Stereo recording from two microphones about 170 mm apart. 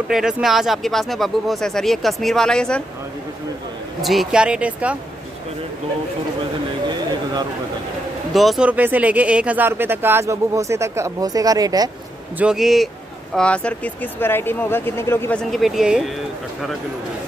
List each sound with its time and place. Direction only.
0.1 s speech: 5° right (ahead or behind)
4.0 s speech: centre (ahead or behind)
8.3 s speech: centre (ahead or behind); by 11.9 s 20° right (ahead or behind)
12.4 s speech: 5° right (ahead or behind); by 15.4 s 15° left (ahead or behind)
15.5 s speech: centre (ahead or behind)